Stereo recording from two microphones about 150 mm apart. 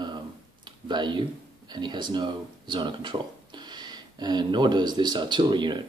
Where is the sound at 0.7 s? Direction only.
30° right (ahead or behind).